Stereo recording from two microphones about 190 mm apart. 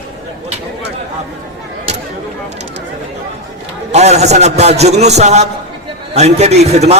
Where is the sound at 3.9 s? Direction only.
35° right (ahead or behind).